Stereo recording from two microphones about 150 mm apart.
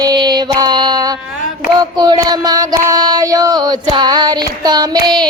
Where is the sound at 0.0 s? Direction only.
25° right (ahead or behind).